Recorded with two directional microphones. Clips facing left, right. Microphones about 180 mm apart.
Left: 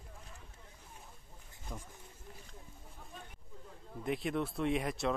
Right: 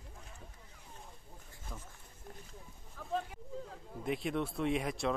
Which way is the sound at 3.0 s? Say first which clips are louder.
Right 9 dB; 90° right.